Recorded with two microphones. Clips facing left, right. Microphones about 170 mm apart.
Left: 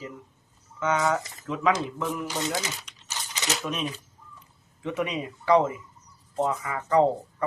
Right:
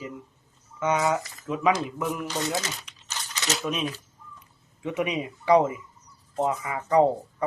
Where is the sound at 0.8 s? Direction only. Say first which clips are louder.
Right 1 dB; 10° right (ahead or behind).